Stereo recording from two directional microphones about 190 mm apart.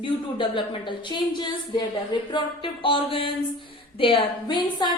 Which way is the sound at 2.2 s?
25° left (ahead or behind).